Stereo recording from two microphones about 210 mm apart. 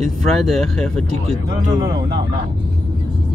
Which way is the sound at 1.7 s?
20° right (ahead or behind).